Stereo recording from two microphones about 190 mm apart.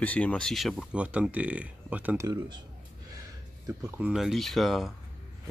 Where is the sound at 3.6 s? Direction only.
5° right (ahead or behind).